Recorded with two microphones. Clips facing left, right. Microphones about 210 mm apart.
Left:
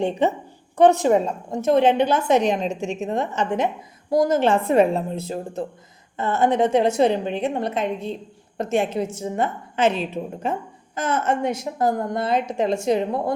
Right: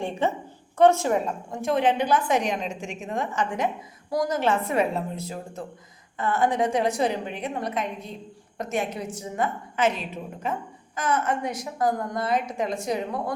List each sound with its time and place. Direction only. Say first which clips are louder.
0.0 s a woman's voice: left 5 dB; 20° left (ahead or behind)